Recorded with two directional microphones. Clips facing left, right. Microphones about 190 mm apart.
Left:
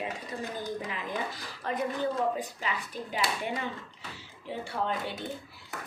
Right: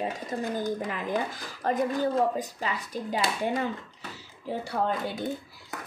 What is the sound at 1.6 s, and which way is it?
Speech, 40° right (ahead or behind).